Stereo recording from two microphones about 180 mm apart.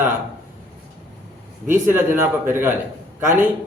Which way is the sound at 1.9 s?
10° right (ahead or behind).